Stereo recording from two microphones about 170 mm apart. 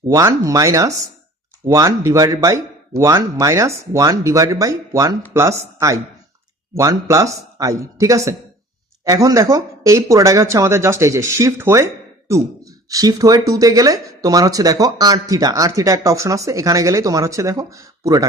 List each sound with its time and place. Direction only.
0.1 s speech: 20° right (ahead or behind)